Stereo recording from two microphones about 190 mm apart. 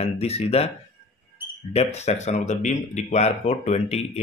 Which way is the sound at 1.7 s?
35° left (ahead or behind).